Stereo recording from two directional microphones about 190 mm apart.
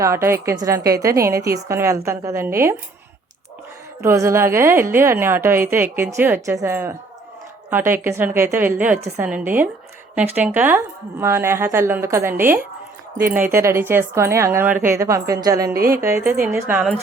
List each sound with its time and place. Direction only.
0.0 s a woman's voice: 15° right (ahead or behind)
4.0 s a woman's voice: 15° right (ahead or behind)